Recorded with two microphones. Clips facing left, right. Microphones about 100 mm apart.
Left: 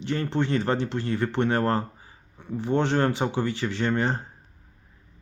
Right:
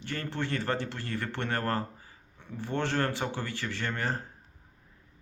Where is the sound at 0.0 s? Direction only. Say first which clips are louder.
Left 8 dB; 20° left (ahead or behind).